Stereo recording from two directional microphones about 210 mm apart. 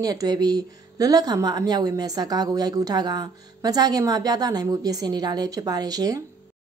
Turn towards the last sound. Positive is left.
turn(degrees=-20)  # may be behind; listen again after turning